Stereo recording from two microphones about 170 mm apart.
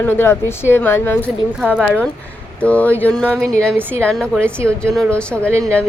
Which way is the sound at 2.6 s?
10° left (ahead or behind).